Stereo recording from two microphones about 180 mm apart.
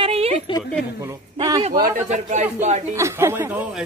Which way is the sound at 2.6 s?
40° right (ahead or behind).